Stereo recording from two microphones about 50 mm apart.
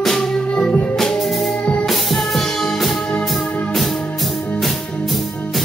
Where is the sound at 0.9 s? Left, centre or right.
Centre.